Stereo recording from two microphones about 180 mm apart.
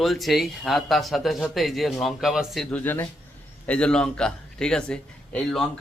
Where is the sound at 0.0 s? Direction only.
Centre (ahead or behind).